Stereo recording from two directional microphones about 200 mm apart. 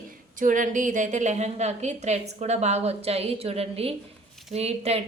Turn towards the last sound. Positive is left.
turn(degrees=-30)  # may be behind; listen again after turning